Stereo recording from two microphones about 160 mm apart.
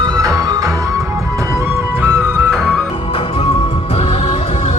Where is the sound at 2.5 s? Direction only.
Centre (ahead or behind).